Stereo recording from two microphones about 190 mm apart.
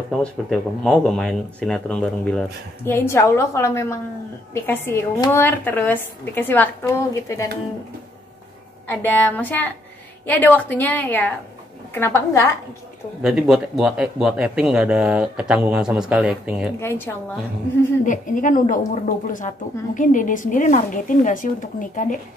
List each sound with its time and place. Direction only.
0.2 s a woman's voice: centre (ahead or behind)
8.8 s a woman's voice: 10° left (ahead or behind)
13.2 s speech: centre (ahead or behind)
16.8 s a woman's voice: 10° left (ahead or behind)
18.0 s a woman's voice: 45° left (ahead or behind)